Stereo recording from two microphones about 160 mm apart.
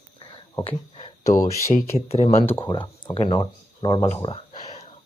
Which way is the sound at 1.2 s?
20° left (ahead or behind).